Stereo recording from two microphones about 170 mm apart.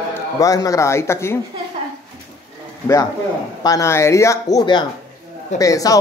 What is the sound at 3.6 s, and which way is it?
Speech, 20° left (ahead or behind).